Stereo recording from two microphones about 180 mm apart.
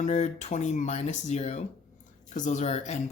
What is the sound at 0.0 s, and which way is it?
Speech, 40° left (ahead or behind).